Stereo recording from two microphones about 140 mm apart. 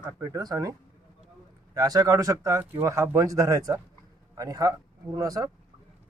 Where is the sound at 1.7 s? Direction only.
25° right (ahead or behind).